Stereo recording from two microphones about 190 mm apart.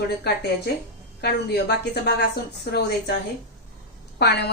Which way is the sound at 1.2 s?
60° left (ahead or behind).